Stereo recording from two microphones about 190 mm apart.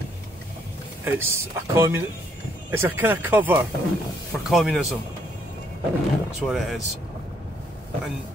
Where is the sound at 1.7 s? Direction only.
15° right (ahead or behind).